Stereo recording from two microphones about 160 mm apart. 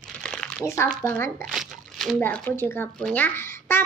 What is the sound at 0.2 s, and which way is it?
Crumpling, 5° left (ahead or behind).